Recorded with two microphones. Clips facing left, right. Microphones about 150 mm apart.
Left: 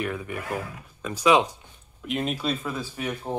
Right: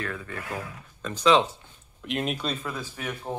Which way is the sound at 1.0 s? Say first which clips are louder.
Left 1 dB; 10° left (ahead or behind).